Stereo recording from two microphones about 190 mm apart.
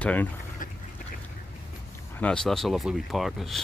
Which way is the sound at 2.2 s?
5° left (ahead or behind).